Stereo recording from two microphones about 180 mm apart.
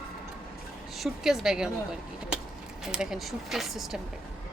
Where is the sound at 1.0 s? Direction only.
Centre (ahead or behind).